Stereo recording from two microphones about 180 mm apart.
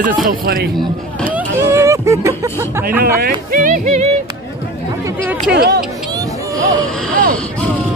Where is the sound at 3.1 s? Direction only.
55° right (ahead or behind).